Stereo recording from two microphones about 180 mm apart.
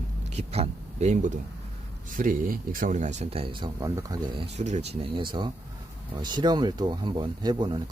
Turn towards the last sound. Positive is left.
turn(degrees=-25)  # may be behind; listen again after turning